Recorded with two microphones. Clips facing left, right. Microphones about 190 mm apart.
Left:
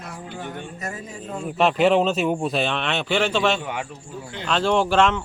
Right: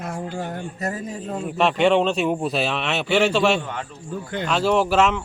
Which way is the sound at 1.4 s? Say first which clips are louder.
Even; centre (ahead or behind).